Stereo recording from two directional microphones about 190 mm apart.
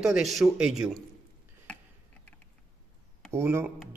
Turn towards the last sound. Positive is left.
turn(degrees=-10)  # may be behind; listen again after turning